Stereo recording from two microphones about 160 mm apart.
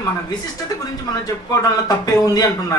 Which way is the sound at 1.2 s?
25° left (ahead or behind).